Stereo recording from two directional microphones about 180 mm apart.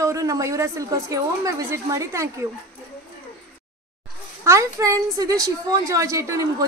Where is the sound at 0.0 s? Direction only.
20° right (ahead or behind).